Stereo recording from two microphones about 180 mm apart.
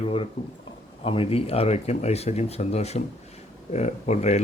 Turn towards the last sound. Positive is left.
turn(degrees=40)  # may be behind; listen again after turning